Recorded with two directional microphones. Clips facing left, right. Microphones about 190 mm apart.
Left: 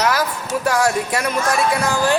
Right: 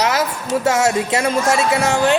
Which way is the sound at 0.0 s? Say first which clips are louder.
Right 1 dB; 25° right (ahead or behind).